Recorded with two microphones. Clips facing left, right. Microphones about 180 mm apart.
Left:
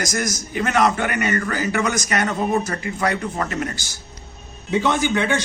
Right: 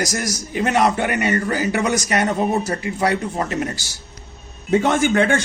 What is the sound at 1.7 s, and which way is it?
Speech, 35° right (ahead or behind).